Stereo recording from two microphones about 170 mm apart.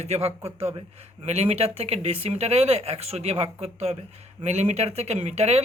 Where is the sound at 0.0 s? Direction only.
40° right (ahead or behind).